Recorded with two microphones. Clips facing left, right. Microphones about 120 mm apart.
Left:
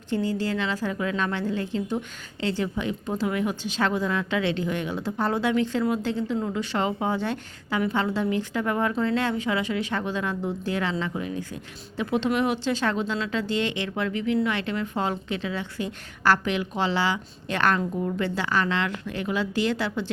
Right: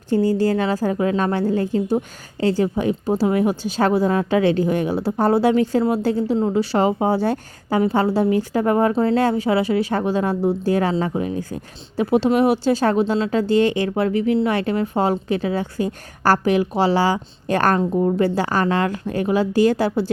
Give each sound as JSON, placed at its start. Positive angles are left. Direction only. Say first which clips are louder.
{"t": 0.1, "sound": "a woman's voice", "louder": "right 8 dB", "side_deg": -40}